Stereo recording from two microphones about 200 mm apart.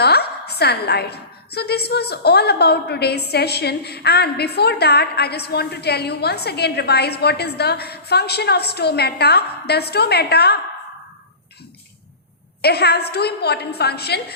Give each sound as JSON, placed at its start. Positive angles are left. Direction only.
{"t": 0.0, "sound": "a woman's voice", "side_deg": 55}
{"t": 12.6, "sound": "a woman's voice", "side_deg": 55}